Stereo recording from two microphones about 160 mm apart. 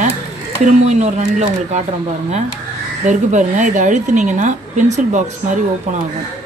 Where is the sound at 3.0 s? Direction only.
50° right (ahead or behind).